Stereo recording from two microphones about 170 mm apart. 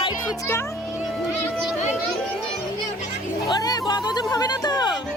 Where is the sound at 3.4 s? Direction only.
25° left (ahead or behind).